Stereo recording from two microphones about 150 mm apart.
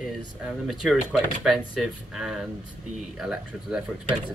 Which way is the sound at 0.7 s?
Centre (ahead or behind).